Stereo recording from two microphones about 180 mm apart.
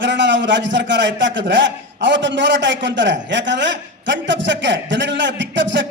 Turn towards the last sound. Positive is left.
turn(degrees=-80)